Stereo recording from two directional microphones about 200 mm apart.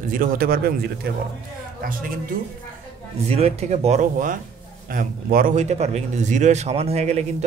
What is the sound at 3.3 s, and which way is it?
A man's voice, 30° right (ahead or behind).